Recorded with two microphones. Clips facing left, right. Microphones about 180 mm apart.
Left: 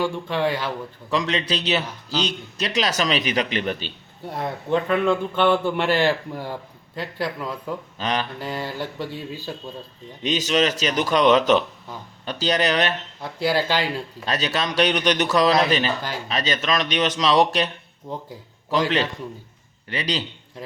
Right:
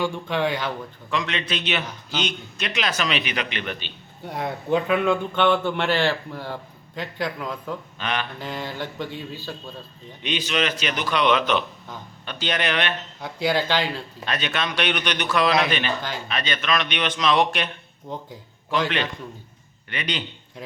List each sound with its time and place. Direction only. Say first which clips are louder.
0.0 s a man's voice: left 1 dB; centre (ahead or behind)
1.1 s a man's voice: left 3 dB; 35° left (ahead or behind)
4.2 s a man's voice: even; centre (ahead or behind)
7.9 s a man's voice: left 4 dB; 35° left (ahead or behind)
8.4 s speech: left 2 dB; 10° left (ahead or behind)
10.2 s a man's voice: left 4 dB; 40° left (ahead or behind)
13.2 s speech: left 1 dB; 5° left (ahead or behind)
14.3 s a man's voice: left 2 dB; 35° left (ahead or behind)
18.1 s a man's voice: left 1 dB; 5° left (ahead or behind)
19.9 s a man's voice: left 3 dB; 35° left (ahead or behind)